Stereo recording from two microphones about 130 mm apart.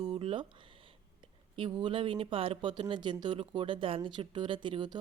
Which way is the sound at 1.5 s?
40° right (ahead or behind).